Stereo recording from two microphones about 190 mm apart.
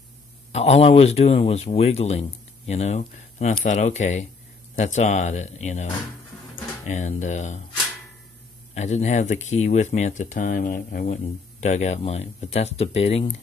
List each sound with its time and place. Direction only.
0.5 s speech: 35° left (ahead or behind)
6.9 s speech: 40° left (ahead or behind)
8.7 s speech: 35° left (ahead or behind)